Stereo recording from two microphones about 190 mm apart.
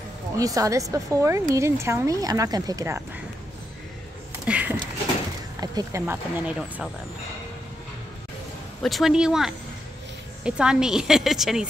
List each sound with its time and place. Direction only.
0.4 s speech: 20° right (ahead or behind)
4.5 s a sound: 5° right (ahead or behind)
5.6 s speech: 20° right (ahead or behind)
8.8 s a woman's voice: centre (ahead or behind)